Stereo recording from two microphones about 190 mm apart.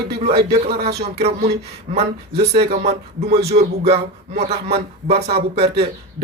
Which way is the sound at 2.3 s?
60° right (ahead or behind).